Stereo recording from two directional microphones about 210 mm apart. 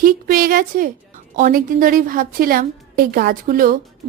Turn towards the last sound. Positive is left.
turn(degrees=-40)  # may be behind; listen again after turning